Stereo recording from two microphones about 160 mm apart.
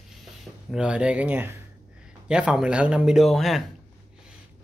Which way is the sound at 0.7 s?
5° right (ahead or behind).